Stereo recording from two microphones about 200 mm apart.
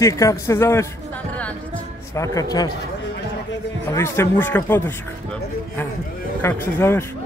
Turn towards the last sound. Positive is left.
turn(degrees=10)  # may be behind; listen again after turning